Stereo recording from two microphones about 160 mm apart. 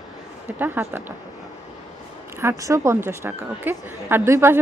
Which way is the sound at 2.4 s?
20° right (ahead or behind).